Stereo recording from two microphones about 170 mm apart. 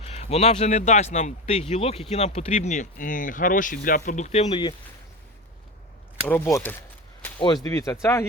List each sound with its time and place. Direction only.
0.0 s speech: 40° left (ahead or behind)
6.2 s speech: 10° left (ahead or behind)
7.2 s a sound: 10° left (ahead or behind)
7.4 s speech: 20° left (ahead or behind)